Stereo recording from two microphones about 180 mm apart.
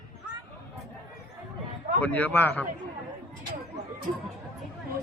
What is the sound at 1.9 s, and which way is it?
Speech, 10° left (ahead or behind).